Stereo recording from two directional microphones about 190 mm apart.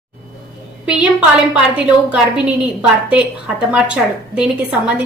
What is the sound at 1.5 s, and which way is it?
A woman's voice, 5° right (ahead or behind).